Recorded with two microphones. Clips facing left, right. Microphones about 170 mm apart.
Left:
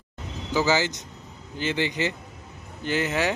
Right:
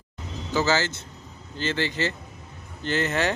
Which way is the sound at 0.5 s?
15° left (ahead or behind).